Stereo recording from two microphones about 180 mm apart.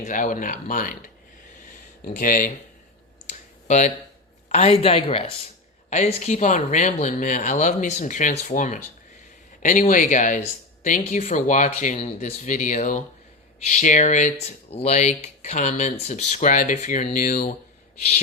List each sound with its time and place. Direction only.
0.0 s speech: 45° left (ahead or behind)
2.1 s speech: 50° left (ahead or behind)
3.2 s clicking: 40° left (ahead or behind)
4.4 s speech: 35° left (ahead or behind)